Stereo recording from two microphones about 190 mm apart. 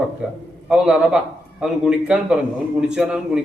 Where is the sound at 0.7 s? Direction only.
5° right (ahead or behind).